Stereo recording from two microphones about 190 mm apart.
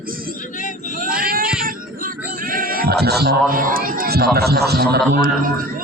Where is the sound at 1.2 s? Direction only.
50° right (ahead or behind).